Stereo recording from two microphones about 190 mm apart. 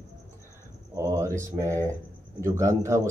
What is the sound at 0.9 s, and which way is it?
A man's voice, 15° right (ahead or behind).